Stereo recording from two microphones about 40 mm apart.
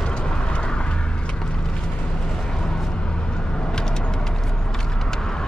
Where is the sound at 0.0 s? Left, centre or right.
Centre.